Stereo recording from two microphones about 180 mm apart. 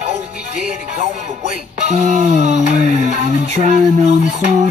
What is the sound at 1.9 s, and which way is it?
Music, 40° right (ahead or behind).